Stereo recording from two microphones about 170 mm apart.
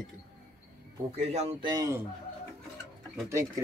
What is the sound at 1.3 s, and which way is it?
Speech, 40° right (ahead or behind).